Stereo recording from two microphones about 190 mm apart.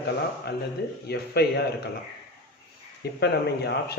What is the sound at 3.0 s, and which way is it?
Speech, 60° left (ahead or behind).